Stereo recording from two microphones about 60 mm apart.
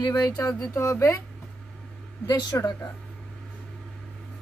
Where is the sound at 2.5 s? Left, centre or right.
Left.